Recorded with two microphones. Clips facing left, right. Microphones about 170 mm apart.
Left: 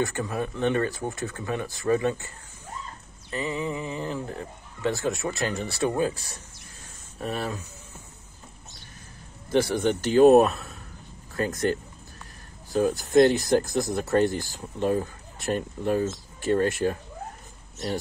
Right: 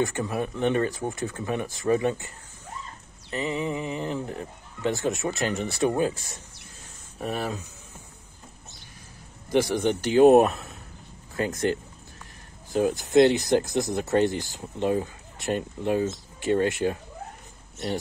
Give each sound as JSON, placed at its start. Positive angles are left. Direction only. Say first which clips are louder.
{"t": 0.0, "sound": "speech", "louder": "right 1 dB", "side_deg": -20}
{"t": 9.5, "sound": "speech", "louder": "even", "side_deg": -15}
{"t": 12.9, "sound": "speech", "louder": "even", "side_deg": -20}